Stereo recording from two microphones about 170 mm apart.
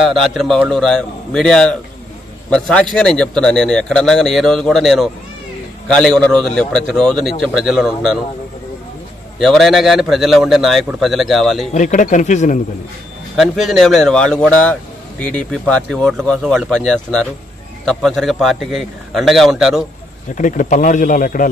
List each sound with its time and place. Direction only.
0.0 s speech: centre (ahead or behind)
9.4 s speech: centre (ahead or behind)
11.7 s speech: 45° left (ahead or behind)
13.4 s speech: centre (ahead or behind)
20.3 s speech: 50° left (ahead or behind)